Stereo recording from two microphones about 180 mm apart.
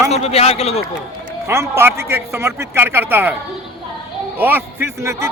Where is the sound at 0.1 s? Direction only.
35° left (ahead or behind).